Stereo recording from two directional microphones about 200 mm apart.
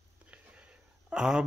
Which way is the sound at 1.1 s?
5° right (ahead or behind).